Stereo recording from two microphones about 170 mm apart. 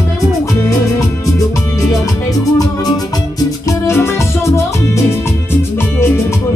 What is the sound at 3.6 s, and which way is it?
Music, 15° left (ahead or behind).